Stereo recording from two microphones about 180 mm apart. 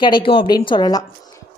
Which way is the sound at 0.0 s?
25° left (ahead or behind).